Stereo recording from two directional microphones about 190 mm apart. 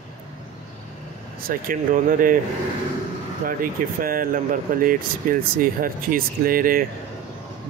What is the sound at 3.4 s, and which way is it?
Speech, 50° right (ahead or behind).